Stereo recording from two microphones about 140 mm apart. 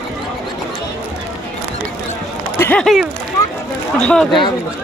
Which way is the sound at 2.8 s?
Centre (ahead or behind).